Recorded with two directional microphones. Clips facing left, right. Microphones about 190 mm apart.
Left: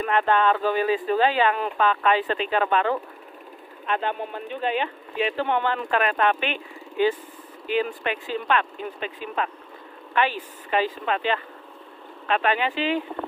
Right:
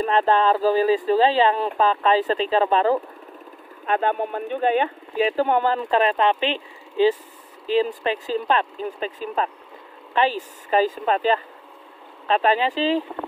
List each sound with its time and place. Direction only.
0.0 s speech: 35° right (ahead or behind)
3.8 s speech: 45° right (ahead or behind)